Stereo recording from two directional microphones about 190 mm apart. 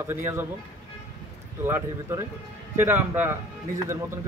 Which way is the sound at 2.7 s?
10° right (ahead or behind).